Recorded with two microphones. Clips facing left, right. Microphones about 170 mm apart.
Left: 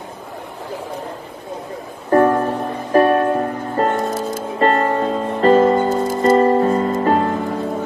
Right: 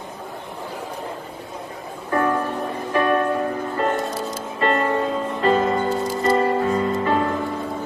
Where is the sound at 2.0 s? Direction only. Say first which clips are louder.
Left 7 dB; 40° left (ahead or behind).